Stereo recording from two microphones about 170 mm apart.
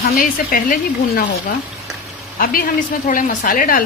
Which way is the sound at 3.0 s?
50° left (ahead or behind).